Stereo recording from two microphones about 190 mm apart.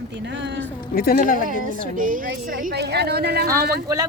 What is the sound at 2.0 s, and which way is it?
A woman's voice, 45° right (ahead or behind).